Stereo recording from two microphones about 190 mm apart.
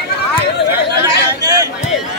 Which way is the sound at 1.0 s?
20° right (ahead or behind).